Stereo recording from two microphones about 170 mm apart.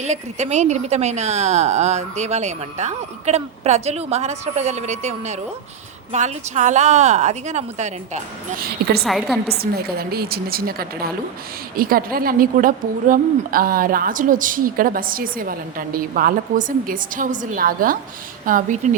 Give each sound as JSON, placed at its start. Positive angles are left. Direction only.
{"t": 0.0, "sound": "a woman's voice", "side_deg": -40}
{"t": 9.0, "sound": "a woman's voice", "side_deg": 0}
{"t": 9.6, "sound": "a woman's voice", "side_deg": -65}